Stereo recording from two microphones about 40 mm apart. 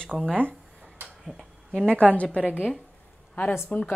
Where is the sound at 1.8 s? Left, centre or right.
Left.